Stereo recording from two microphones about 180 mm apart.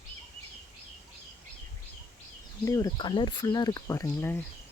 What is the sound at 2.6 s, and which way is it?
Speech, 20° left (ahead or behind).